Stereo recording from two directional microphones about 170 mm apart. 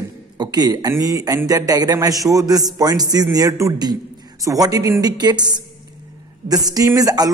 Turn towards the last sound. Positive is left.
turn(degrees=-20)  # may be behind; listen again after turning